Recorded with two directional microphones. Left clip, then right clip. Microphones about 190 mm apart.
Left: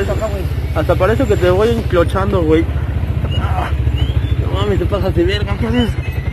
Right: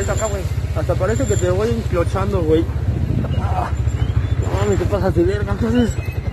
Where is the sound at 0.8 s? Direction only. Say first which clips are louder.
Left 6 dB; centre (ahead or behind).